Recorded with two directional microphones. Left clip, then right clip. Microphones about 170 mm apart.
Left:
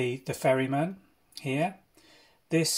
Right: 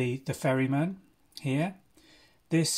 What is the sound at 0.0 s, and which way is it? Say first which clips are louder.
Speech: left 3 dB; 25° right (ahead or behind).